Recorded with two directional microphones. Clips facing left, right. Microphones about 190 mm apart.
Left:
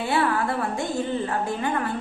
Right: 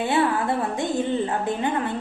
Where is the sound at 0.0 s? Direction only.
20° right (ahead or behind).